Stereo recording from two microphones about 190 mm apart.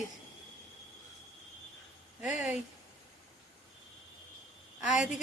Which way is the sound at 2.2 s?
5° right (ahead or behind).